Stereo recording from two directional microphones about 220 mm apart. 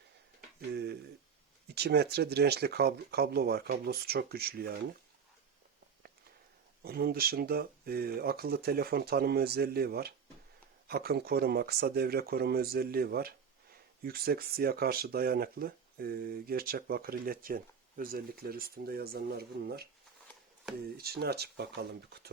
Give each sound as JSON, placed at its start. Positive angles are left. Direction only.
{"t": 1.7, "sound": "speech", "side_deg": -45}
{"t": 6.8, "sound": "speech", "side_deg": -45}
{"t": 20.9, "sound": "speech", "side_deg": -45}